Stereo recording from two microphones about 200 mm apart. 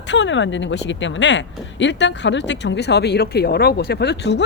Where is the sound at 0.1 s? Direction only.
65° left (ahead or behind).